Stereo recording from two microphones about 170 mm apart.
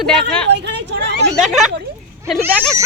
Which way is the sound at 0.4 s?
90° right.